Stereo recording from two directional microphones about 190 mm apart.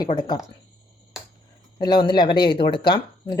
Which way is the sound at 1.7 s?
20° left (ahead or behind).